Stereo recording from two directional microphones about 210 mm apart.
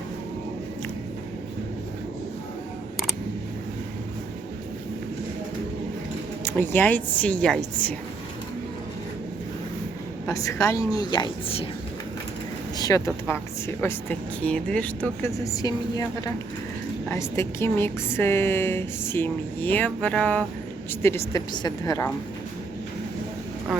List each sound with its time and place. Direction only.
6.4 s a woman's voice: 10° left (ahead or behind)
10.2 s a woman's voice: 15° left (ahead or behind)
12.7 s a woman's voice: 15° left (ahead or behind)